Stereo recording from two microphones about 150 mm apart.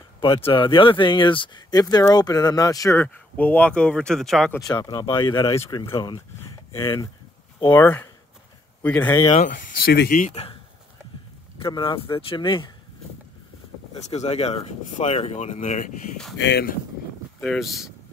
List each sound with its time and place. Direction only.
0.2 s speech: 35° left (ahead or behind)
3.0 s speech: 10° left (ahead or behind)
4.6 s speech: 25° left (ahead or behind)
7.8 s speech: 15° left (ahead or behind)
9.3 s speech: 55° left (ahead or behind)
11.5 s speech: 35° left (ahead or behind)
14.1 s speech: 45° left (ahead or behind)
17.4 s speech: centre (ahead or behind)